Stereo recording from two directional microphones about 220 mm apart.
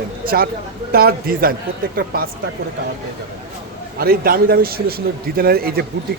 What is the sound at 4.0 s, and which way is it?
Speech, 40° right (ahead or behind).